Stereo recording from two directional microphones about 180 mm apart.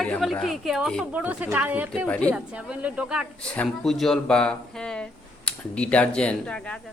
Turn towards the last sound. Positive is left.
turn(degrees=5)  # may be behind; listen again after turning